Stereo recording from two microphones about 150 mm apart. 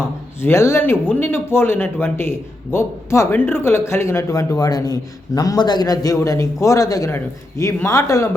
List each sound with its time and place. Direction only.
0.4 s speech: 15° left (ahead or behind)